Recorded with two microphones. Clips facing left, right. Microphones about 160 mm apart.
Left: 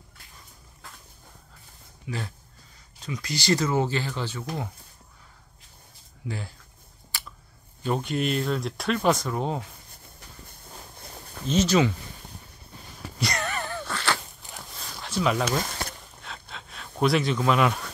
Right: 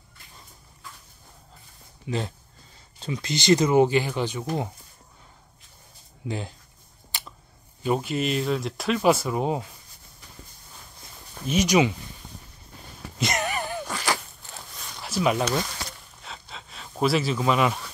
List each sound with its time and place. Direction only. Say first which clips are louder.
2.0 s speech: right 5 dB; 25° right (ahead or behind)
6.2 s speech: right 4 dB; 20° right (ahead or behind)
7.1 s a sound: right 1 dB; 20° right (ahead or behind)
7.8 s speech: right 2 dB; 5° right (ahead or behind)
11.4 s speech: right 1 dB; 15° right (ahead or behind)
13.2 s wail: right 3 dB; 20° right (ahead or behind)
14.4 s zipper: even; 15° left (ahead or behind)
15.0 s speech: right 1 dB; 10° right (ahead or behind)
15.8 s a sound: left 3 dB; 55° left (ahead or behind)
16.2 s a sound: right 2 dB; centre (ahead or behind)